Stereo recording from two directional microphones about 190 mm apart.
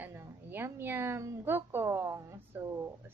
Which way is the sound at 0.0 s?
10° right (ahead or behind).